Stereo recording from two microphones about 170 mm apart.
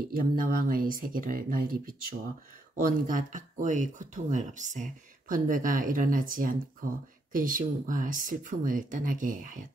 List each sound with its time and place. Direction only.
0.0 s speech: 55° right (ahead or behind)